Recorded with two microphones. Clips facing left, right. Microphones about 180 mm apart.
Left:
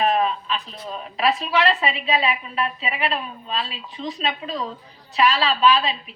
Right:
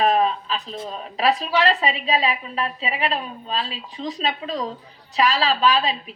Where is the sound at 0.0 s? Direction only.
35° right (ahead or behind).